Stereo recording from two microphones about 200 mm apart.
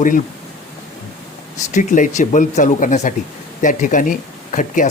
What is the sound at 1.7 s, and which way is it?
Speech, 40° left (ahead or behind).